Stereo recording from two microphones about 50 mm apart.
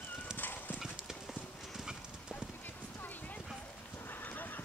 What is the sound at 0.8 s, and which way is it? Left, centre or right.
Clip-clop, centre.